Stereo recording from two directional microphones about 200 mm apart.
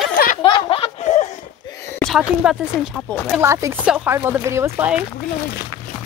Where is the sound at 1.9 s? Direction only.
Centre (ahead or behind).